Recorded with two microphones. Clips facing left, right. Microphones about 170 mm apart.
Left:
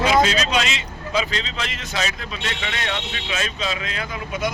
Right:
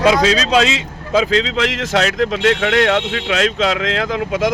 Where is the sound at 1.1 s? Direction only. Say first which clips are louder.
Right 10 dB; 90° right.